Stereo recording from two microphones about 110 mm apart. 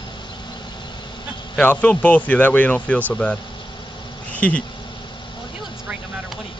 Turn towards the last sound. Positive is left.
turn(degrees=15)  # may be behind; listen again after turning